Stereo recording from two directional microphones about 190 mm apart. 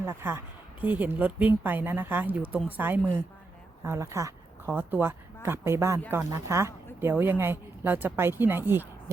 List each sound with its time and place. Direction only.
0.0 s speech: 10° right (ahead or behind)